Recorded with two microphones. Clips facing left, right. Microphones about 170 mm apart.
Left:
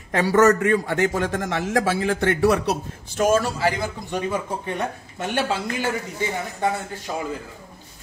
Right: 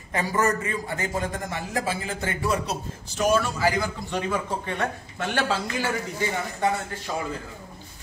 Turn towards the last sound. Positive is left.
turn(degrees=10)  # may be behind; listen again after turning